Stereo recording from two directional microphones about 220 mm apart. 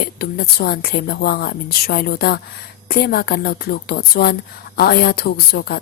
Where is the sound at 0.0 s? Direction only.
45° left (ahead or behind).